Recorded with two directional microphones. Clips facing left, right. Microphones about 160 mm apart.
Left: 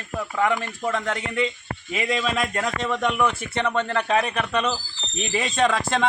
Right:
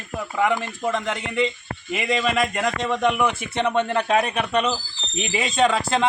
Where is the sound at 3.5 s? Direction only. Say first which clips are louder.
Right 2 dB; 20° right (ahead or behind).